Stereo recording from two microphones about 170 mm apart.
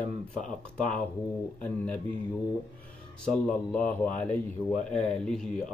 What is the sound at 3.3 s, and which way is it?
Speech, 50° left (ahead or behind).